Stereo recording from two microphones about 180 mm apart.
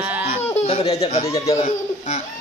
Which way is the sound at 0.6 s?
35° left (ahead or behind).